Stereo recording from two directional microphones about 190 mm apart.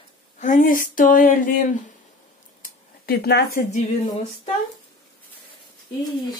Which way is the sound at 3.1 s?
60° left (ahead or behind).